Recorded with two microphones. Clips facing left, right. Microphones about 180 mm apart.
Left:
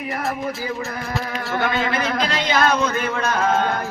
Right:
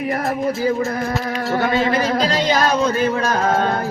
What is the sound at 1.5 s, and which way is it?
Speech, 40° right (ahead or behind).